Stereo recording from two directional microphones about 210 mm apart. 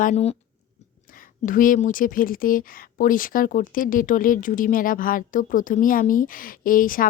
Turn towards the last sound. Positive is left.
turn(degrees=40)  # may be behind; listen again after turning